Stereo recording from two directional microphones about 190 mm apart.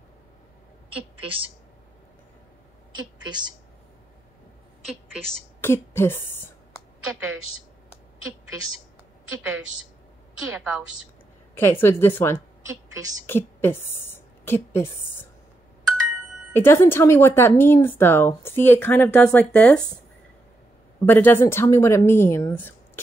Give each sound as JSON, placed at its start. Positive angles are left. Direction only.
{"t": 1.2, "sound": "a woman's voice", "side_deg": -30}
{"t": 3.3, "sound": "a woman's voice", "side_deg": -25}
{"t": 5.2, "sound": "a woman's voice", "side_deg": 10}
{"t": 8.3, "sound": "a woman's voice", "side_deg": -90}
{"t": 9.4, "sound": "a woman's voice", "side_deg": -5}
{"t": 11.8, "sound": "a woman's voice", "side_deg": 10}
{"t": 16.5, "sound": "a woman's voice", "side_deg": 10}
{"t": 21.0, "sound": "a woman's voice", "side_deg": 10}